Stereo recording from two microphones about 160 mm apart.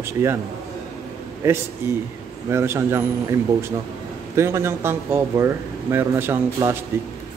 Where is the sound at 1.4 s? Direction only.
15° right (ahead or behind).